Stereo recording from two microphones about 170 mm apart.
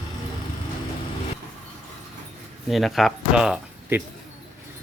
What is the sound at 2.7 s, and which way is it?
Speech, centre (ahead or behind).